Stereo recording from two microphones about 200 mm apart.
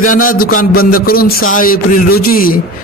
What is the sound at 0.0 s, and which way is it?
A man's voice, 45° left (ahead or behind).